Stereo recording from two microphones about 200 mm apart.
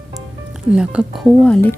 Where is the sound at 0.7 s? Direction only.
5° right (ahead or behind).